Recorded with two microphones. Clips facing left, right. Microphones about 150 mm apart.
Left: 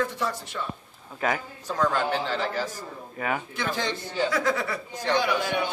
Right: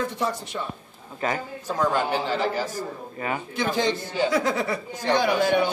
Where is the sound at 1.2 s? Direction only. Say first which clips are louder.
Right 1 dB; 5° left (ahead or behind).